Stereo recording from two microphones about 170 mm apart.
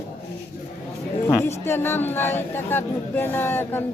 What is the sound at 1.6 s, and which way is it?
Speech, 15° left (ahead or behind).